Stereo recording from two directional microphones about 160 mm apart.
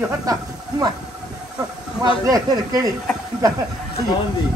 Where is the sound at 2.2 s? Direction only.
20° right (ahead or behind).